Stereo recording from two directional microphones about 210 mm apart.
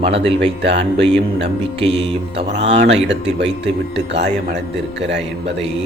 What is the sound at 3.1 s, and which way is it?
A man's voice, 55° right (ahead or behind).